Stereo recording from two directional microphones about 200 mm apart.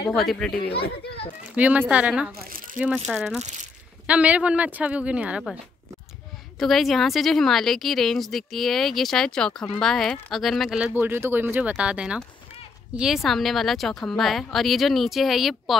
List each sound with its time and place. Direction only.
0.1 s a woman's voice: centre (ahead or behind)
1.5 s a woman's voice: 10° right (ahead or behind)
2.3 s speech: 45° right (ahead or behind)
3.1 s a woman's voice: centre (ahead or behind)
6.6 s a woman's voice: centre (ahead or behind)